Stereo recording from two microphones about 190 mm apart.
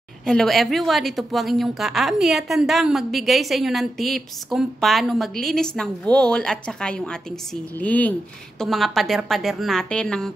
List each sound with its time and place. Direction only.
0.2 s a woman's voice: 5° left (ahead or behind)